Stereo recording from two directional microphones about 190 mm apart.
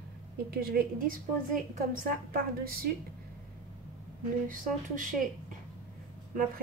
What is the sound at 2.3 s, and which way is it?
Speech, 50° right (ahead or behind).